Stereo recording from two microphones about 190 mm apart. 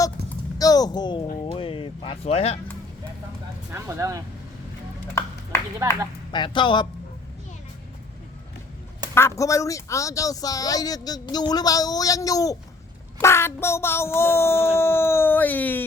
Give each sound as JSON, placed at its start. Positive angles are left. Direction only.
{"t": 0.6, "sound": "speech", "side_deg": 20}
{"t": 3.7, "sound": "speech", "side_deg": -15}
{"t": 5.8, "sound": "speech", "side_deg": -15}
{"t": 6.3, "sound": "speech", "side_deg": 25}
{"t": 9.1, "sound": "speech", "side_deg": 15}